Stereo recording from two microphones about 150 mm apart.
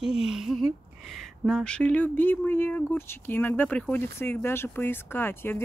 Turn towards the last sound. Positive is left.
turn(degrees=15)  # may be behind; listen again after turning